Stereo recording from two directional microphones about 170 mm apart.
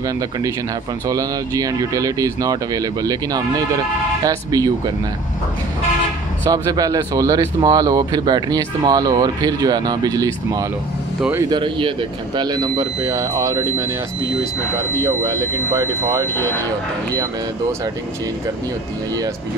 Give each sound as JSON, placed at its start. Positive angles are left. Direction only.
{"t": 1.0, "sound": "speech", "side_deg": -20}
{"t": 6.5, "sound": "speech", "side_deg": -20}
{"t": 15.0, "sound": "speech", "side_deg": -20}